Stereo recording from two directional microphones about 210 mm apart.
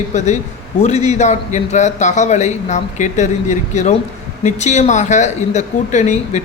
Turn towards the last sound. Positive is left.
turn(degrees=35)  # may be behind; listen again after turning